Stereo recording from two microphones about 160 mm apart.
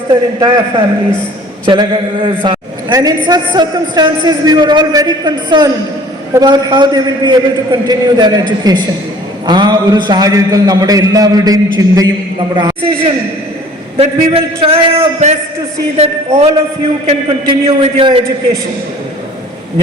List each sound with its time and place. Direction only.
0.1 s a man's voice: 25° right (ahead or behind)